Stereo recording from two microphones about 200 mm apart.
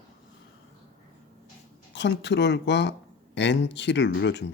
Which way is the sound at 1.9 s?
60° left (ahead or behind).